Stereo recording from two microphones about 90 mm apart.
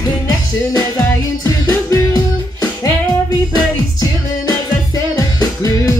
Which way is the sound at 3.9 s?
45° left (ahead or behind).